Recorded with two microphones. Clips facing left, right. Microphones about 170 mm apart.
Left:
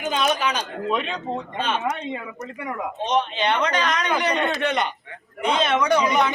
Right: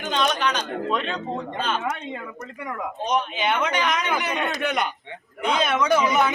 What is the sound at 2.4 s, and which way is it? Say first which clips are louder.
Speech: left 1 dB; 5° left (ahead or behind).